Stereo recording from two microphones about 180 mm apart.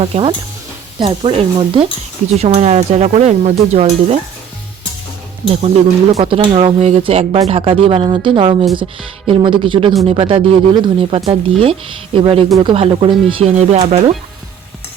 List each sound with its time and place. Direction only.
0.0 s speech: 30° right (ahead or behind)
6.1 s speech: 30° right (ahead or behind)